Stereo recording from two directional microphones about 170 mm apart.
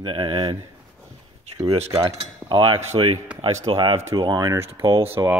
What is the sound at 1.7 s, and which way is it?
Speech, 35° right (ahead or behind).